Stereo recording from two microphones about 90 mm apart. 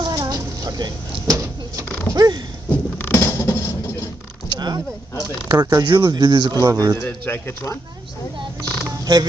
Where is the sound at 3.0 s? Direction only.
30° left (ahead or behind).